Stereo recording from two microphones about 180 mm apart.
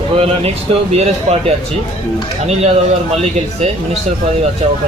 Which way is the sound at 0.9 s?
35° right (ahead or behind).